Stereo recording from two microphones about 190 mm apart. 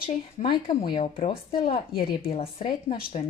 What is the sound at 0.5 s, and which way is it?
Speech, 25° left (ahead or behind).